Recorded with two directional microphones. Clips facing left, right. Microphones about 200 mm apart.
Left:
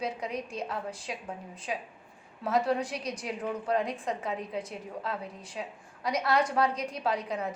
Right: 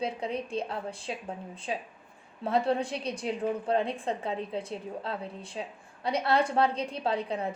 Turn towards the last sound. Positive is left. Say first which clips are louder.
# right 1 dB
turn(degrees=-30)  # may be behind; listen again after turning